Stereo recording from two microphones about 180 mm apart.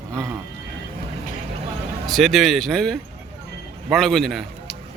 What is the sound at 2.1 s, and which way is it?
Speech, centre (ahead or behind).